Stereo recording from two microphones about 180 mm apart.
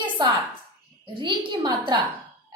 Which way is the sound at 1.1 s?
25° right (ahead or behind).